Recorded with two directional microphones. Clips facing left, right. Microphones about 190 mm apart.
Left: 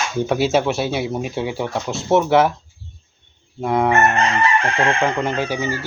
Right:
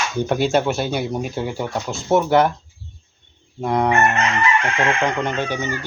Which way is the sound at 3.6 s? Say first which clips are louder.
Left 1 dB; 5° left (ahead or behind).